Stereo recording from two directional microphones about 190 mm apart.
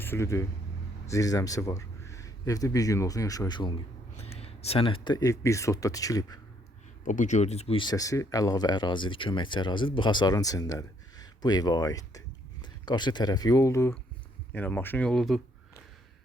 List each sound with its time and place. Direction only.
0.0 s a man's voice: 15° left (ahead or behind)
7.0 s speech: 40° left (ahead or behind); by 15.4 s centre (ahead or behind)